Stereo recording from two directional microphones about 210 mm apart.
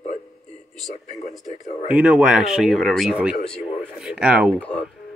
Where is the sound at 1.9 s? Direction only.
5° right (ahead or behind).